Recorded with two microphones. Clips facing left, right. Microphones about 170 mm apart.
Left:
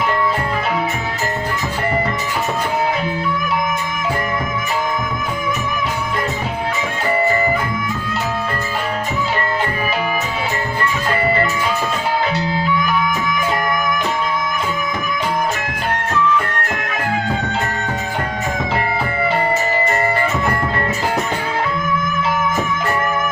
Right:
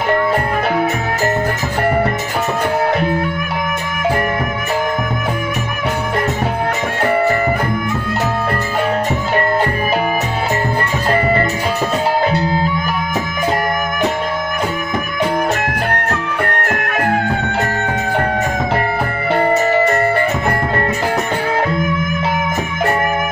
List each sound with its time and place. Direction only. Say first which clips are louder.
15.9 s music: left 2 dB; 60° right (ahead or behind)